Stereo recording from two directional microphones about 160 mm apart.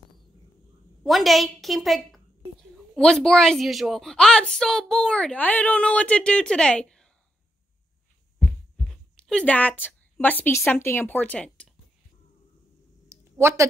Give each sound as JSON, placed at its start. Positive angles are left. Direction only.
{"t": 1.0, "sound": "a woman's voice", "side_deg": 0}
{"t": 9.1, "sound": "a woman's voice", "side_deg": 5}
{"t": 13.1, "sound": "a sound", "side_deg": -15}